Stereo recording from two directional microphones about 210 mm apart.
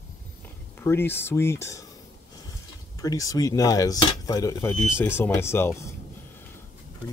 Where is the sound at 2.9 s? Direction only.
15° left (ahead or behind).